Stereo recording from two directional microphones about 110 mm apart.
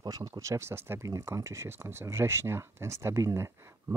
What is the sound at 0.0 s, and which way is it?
Speech, 35° right (ahead or behind).